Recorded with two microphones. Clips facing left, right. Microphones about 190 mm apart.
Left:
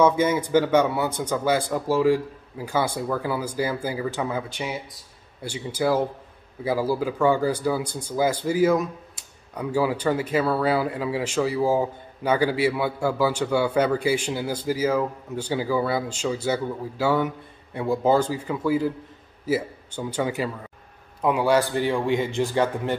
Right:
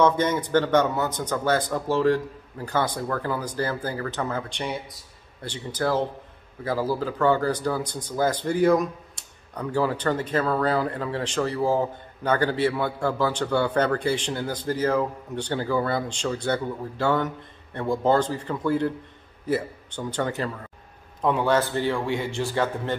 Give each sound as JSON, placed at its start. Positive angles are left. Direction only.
{"t": 0.0, "sound": "speech", "side_deg": 10}